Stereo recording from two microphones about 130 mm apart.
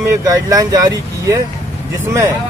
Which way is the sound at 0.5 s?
30° right (ahead or behind).